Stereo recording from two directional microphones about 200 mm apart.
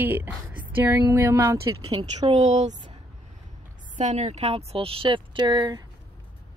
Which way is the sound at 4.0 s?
35° right (ahead or behind).